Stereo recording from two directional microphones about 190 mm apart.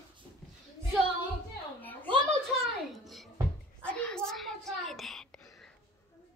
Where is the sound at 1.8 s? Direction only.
10° left (ahead or behind).